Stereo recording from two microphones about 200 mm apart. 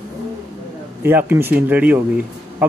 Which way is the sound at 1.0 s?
10° right (ahead or behind).